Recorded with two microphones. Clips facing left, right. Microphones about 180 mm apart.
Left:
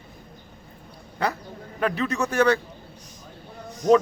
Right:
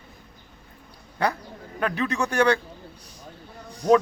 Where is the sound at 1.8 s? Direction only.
Centre (ahead or behind).